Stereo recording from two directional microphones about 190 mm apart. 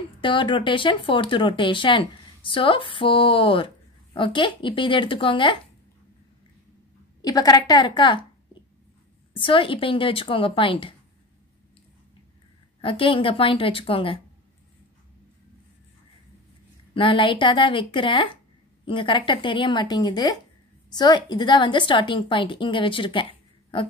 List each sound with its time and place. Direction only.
0.2 s speech: 25° left (ahead or behind)
7.2 s speech: 20° left (ahead or behind)
9.4 s speech: 25° left (ahead or behind)
12.8 s speech: 30° left (ahead or behind)
16.9 s speech: 25° left (ahead or behind)